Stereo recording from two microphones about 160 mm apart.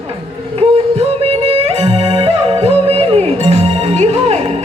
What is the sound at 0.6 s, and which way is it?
Music, 40° right (ahead or behind).